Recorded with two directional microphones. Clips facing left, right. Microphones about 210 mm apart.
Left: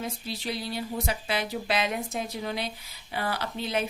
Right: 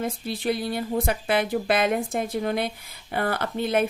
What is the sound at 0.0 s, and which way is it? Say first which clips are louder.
Speech: right 7 dB; 55° right (ahead or behind).